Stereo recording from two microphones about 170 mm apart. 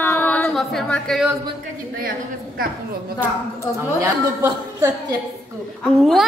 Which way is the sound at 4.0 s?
20° right (ahead or behind).